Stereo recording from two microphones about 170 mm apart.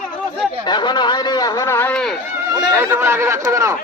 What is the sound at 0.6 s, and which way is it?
A man's voice, 25° left (ahead or behind).